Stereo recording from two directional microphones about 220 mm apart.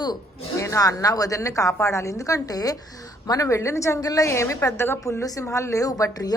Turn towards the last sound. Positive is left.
turn(degrees=15)  # may be behind; listen again after turning